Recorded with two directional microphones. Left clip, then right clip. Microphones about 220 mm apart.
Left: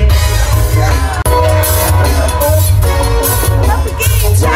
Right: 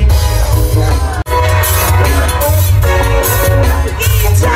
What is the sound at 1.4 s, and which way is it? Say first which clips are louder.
Music: even; 60° left (ahead or behind).